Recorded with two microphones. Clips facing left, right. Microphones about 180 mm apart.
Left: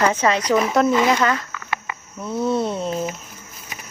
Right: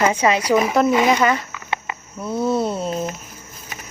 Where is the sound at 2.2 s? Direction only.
5° right (ahead or behind).